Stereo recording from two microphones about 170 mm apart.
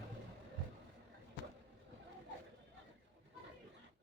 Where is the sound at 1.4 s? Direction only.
75° left (ahead or behind).